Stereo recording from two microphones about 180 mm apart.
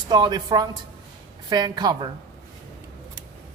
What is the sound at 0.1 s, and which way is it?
A woman's voice, 25° right (ahead or behind).